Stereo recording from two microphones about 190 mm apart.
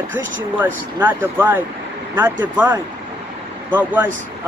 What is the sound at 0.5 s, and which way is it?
Speech, 10° right (ahead or behind).